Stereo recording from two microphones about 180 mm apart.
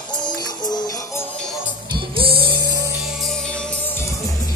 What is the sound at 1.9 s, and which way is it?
Music, 30° right (ahead or behind).